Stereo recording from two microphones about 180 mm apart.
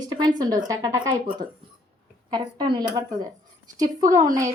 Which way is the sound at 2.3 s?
25° right (ahead or behind).